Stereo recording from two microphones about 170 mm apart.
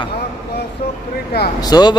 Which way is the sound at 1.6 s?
25° left (ahead or behind).